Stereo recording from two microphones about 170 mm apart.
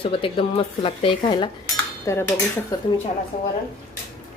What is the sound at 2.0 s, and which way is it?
Dishes, 15° left (ahead or behind).